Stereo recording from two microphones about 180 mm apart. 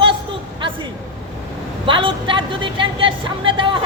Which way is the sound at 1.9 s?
30° right (ahead or behind).